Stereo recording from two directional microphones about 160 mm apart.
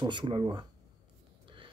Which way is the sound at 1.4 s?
30° right (ahead or behind).